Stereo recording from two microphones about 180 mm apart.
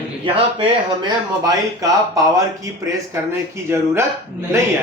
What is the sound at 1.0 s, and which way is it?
Speech, 20° right (ahead or behind).